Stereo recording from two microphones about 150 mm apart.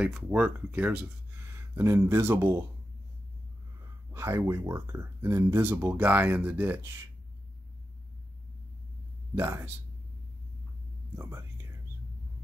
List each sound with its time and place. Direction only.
0.0 s speech: 10° right (ahead or behind)
4.1 s speech: 15° right (ahead or behind)
9.4 s speech: 15° right (ahead or behind)
11.1 s speech: 20° right (ahead or behind)